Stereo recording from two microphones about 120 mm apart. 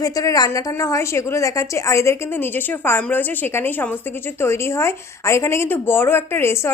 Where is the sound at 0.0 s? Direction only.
30° left (ahead or behind).